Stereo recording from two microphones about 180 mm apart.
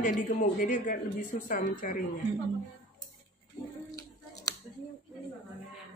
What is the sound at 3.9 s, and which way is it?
Scissors, 20° left (ahead or behind).